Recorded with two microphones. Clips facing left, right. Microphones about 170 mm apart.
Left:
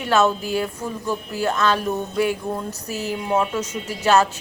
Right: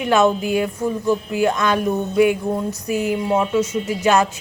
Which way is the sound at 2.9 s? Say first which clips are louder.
Right 7 dB; 50° right (ahead or behind).